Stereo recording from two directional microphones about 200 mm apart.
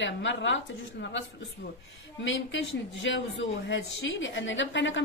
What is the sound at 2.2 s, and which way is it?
A woman's voice, 70° left (ahead or behind).